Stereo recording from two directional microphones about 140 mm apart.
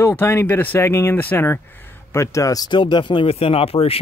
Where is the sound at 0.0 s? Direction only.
15° left (ahead or behind).